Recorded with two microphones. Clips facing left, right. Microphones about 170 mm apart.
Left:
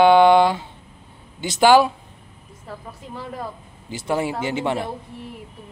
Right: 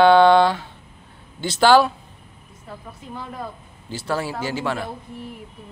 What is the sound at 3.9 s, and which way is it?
Speech, 20° left (ahead or behind).